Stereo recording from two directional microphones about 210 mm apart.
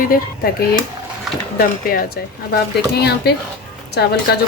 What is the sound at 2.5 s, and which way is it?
Speech, 50° left (ahead or behind).